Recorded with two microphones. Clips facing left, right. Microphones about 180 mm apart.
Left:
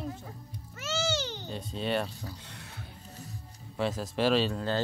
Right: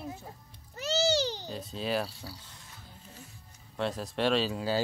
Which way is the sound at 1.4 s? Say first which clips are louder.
Left 1 dB; centre (ahead or behind).